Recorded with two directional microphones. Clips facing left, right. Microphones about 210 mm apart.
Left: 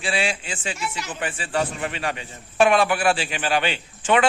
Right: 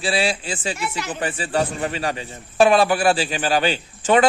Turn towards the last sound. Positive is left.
turn(degrees=-35)  # may be behind; listen again after turning